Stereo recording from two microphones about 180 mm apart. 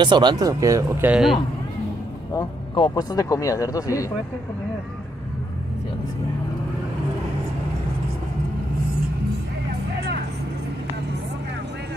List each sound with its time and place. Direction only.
0.0 s speech: 25° right (ahead or behind); by 1.4 s 5° right (ahead or behind)
2.3 s speech: 25° left (ahead or behind)